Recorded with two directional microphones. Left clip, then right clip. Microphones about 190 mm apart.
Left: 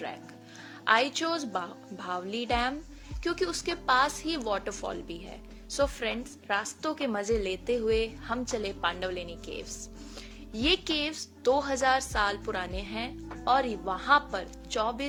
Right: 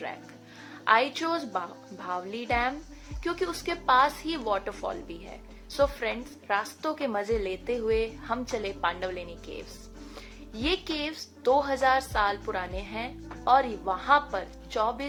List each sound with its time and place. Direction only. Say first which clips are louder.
0.9 s speech: right 2 dB; 35° left (ahead or behind)
10.5 s speech: left 2 dB; 35° left (ahead or behind)